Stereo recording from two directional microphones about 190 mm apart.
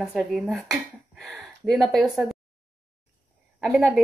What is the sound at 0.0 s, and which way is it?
Speech, 5° right (ahead or behind).